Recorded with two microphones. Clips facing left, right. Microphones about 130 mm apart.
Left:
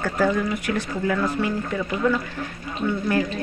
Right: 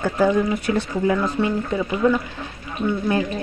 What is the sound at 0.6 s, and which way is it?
Speech, 30° right (ahead or behind).